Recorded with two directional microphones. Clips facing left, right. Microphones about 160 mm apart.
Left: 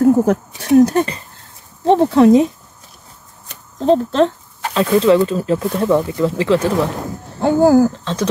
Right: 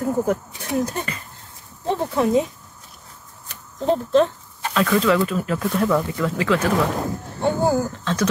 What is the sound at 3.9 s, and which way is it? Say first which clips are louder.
Speech: left 3 dB; 85° left.